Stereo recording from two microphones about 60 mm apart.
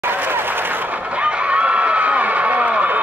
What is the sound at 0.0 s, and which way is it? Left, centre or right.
Applause, right.